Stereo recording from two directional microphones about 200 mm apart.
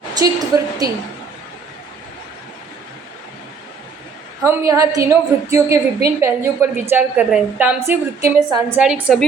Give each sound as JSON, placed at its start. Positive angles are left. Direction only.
{"t": 0.1, "sound": "a woman's voice", "side_deg": -20}
{"t": 4.4, "sound": "a woman's voice", "side_deg": -15}